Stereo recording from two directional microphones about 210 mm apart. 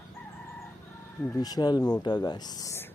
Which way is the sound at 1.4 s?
20° left (ahead or behind).